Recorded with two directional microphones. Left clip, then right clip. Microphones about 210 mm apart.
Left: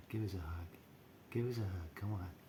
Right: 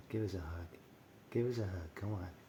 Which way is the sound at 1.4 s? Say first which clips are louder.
Right 4 dB; 20° left (ahead or behind).